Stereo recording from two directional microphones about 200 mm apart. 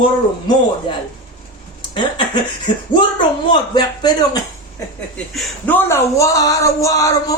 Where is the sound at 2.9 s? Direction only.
25° left (ahead or behind).